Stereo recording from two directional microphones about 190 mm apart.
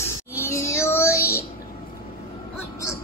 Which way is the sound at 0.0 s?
15° left (ahead or behind).